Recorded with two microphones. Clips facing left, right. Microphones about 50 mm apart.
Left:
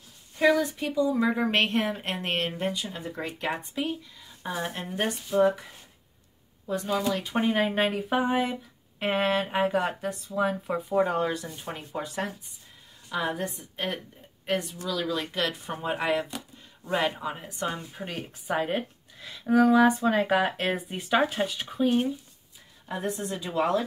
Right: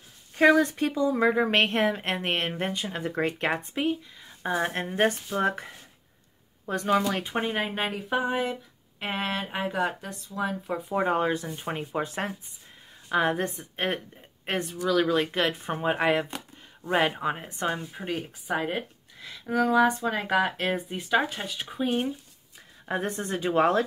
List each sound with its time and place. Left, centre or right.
0.4 s speech: right
0.9 s speech: right
4.4 s speech: right
4.6 s speech: right
6.6 s speech: right
7.2 s speech: centre
7.5 s speech: centre
11.0 s speech: right
17.9 s speech: centre
22.8 s speech: right